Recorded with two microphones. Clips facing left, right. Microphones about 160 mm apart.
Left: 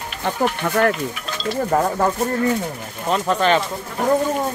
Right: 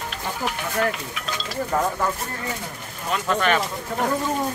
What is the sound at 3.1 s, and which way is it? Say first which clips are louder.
Speech: left 4 dB; 30° left (ahead or behind).